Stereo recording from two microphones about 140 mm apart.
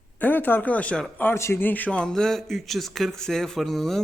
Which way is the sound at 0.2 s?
15° left (ahead or behind).